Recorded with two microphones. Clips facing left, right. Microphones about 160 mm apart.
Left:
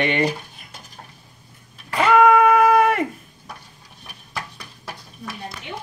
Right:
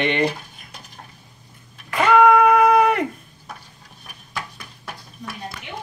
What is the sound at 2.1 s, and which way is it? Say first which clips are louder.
Music: even; centre (ahead or behind).